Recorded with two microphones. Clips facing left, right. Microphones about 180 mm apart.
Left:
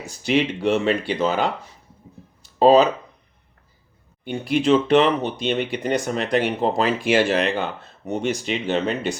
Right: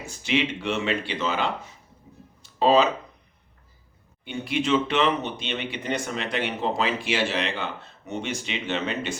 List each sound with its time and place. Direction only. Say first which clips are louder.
0.0 s speech: left 5 dB; 40° left (ahead or behind)
2.6 s speech: left 5 dB; 40° left (ahead or behind)
4.2 s speech: left 5 dB; 40° left (ahead or behind)